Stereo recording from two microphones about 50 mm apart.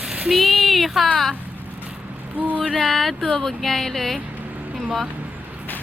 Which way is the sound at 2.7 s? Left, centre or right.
Centre.